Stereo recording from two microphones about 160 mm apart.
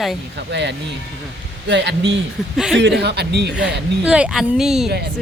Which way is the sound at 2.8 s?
90° right.